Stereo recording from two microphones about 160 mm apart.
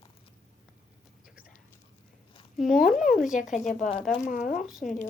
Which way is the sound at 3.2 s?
50° left (ahead or behind).